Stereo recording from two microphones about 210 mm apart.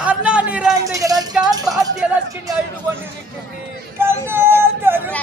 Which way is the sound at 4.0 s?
10° right (ahead or behind).